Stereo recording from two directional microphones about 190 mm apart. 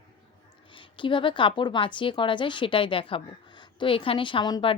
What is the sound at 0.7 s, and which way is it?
A woman's voice, 25° left (ahead or behind).